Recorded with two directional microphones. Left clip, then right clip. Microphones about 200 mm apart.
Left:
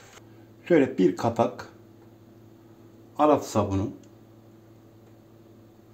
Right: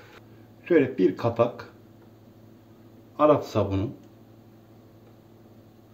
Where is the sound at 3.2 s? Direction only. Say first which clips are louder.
Right 1 dB; 40° left (ahead or behind).